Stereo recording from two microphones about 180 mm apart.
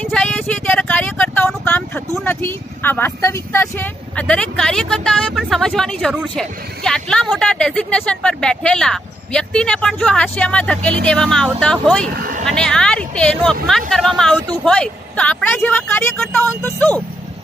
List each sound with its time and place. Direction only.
0.0 s speech: 5° left (ahead or behind)
12.1 s speech: 50° right (ahead or behind)
12.4 s speech: 5° left (ahead or behind)